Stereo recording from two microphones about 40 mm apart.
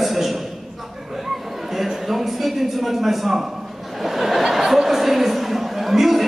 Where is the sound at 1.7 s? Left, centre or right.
Centre.